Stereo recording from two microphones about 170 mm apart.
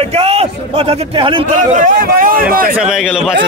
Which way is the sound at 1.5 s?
50° right (ahead or behind).